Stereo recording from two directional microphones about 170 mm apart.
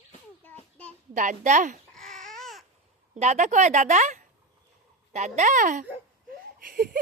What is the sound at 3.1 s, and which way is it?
Speech, 40° right (ahead or behind).